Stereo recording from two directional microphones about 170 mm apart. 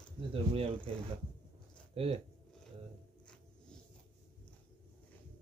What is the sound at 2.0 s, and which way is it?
Speech, 35° right (ahead or behind).